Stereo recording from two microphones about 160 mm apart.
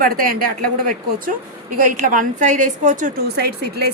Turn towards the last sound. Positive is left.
turn(degrees=-85)